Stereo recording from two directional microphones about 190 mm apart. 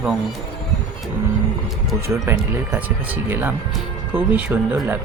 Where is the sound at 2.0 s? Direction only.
15° right (ahead or behind).